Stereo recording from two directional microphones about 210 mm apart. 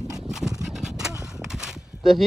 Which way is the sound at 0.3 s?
Centre (ahead or behind).